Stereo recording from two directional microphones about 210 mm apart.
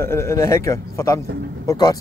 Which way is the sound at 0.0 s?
10° left (ahead or behind).